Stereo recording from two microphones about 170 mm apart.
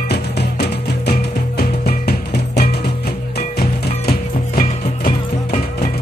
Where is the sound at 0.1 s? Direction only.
75° left (ahead or behind).